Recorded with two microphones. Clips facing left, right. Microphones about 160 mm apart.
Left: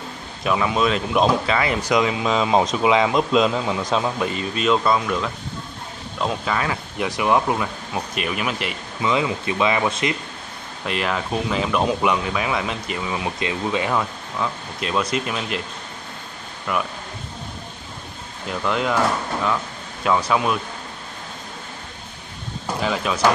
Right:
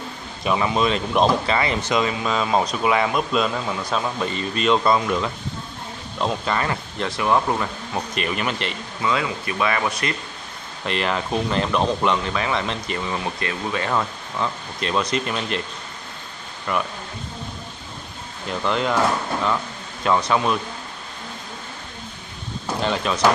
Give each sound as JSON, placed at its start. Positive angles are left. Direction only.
{"t": 0.4, "sound": "speech", "side_deg": 0}
{"t": 7.1, "sound": "speech", "side_deg": 15}
{"t": 9.0, "sound": "speech", "side_deg": 20}
{"t": 10.9, "sound": "speech", "side_deg": 5}
{"t": 13.4, "sound": "speech", "side_deg": 20}
{"t": 13.9, "sound": "speech", "side_deg": 5}
{"t": 16.7, "sound": "speech", "side_deg": 5}
{"t": 18.5, "sound": "speech", "side_deg": 5}
{"t": 22.8, "sound": "speech", "side_deg": 5}